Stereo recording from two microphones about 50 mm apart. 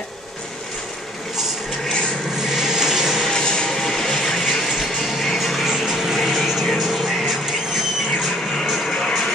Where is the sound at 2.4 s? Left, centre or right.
Centre.